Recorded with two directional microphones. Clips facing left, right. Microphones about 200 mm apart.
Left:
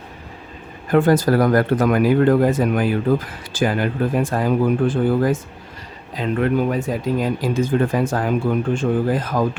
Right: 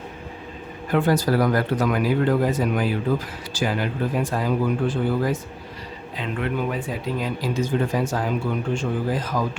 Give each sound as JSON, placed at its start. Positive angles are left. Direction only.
{"t": 0.9, "sound": "speech", "side_deg": 50}